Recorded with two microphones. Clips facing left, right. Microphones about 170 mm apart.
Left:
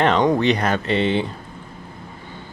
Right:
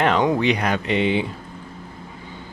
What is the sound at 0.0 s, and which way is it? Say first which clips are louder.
Speech: left 2 dB; 5° right (ahead or behind).